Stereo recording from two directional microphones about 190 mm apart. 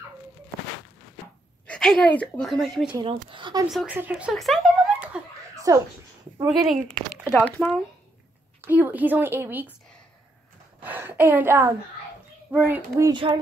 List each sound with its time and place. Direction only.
1.7 s a woman's voice: 5° left (ahead or behind)
3.0 s speech: 25° right (ahead or behind)
3.6 s a woman's voice: 5° right (ahead or behind)
5.1 s a sound: 5° right (ahead or behind)
5.7 s a woman's voice: 15° right (ahead or behind)
6.6 s speech: centre (ahead or behind)
8.5 s a woman's voice: 10° right (ahead or behind)
10.8 s a sound: 10° right (ahead or behind)
12.4 s a woman's voice: 10° right (ahead or behind)
13.1 s speech: 25° right (ahead or behind)